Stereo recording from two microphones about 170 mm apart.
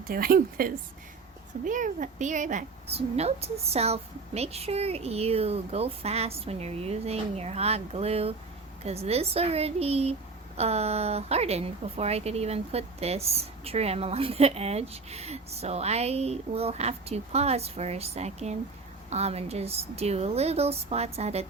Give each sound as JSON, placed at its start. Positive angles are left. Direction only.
{"t": 0.1, "sound": "a woman's voice", "side_deg": -60}